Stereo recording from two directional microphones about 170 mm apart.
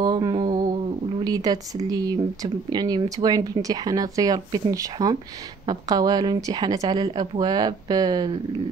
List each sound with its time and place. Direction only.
0.0 s music: 25° right (ahead or behind)
1.2 s speech: 25° right (ahead or behind)